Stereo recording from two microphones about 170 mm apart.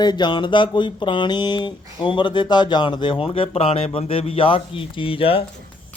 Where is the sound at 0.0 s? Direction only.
25° left (ahead or behind).